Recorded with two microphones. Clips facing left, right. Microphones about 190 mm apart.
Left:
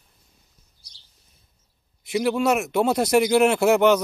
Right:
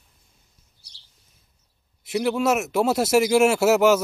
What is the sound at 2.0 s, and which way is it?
Speech, centre (ahead or behind).